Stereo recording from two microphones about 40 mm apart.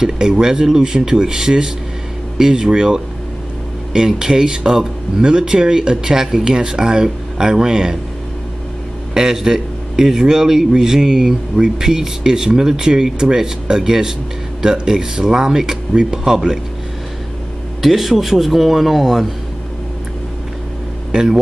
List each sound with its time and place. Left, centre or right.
0.0 s a man's voice: centre
9.1 s a man's voice: centre
17.8 s speech: centre
21.1 s speech: centre